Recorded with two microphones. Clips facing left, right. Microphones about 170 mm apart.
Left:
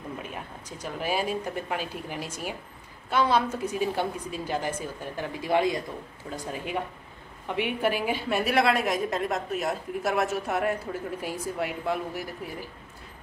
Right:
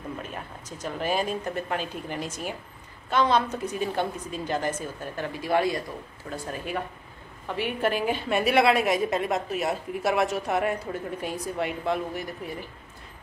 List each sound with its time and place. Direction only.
0.3 s a woman's voice: 10° left (ahead or behind)